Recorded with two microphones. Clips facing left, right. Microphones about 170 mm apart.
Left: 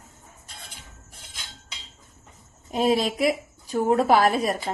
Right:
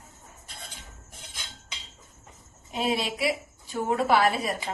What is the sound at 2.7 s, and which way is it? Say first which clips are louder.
A woman's voice: left 6 dB; 40° left (ahead or behind).